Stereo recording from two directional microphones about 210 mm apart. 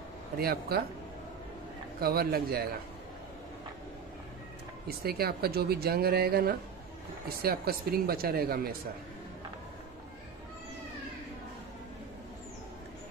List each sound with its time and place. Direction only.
0.4 s speech: 45° right (ahead or behind)
2.0 s speech: 45° right (ahead or behind)
4.8 s speech: 45° right (ahead or behind)